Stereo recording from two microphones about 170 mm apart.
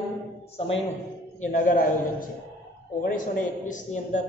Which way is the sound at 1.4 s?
50° left (ahead or behind).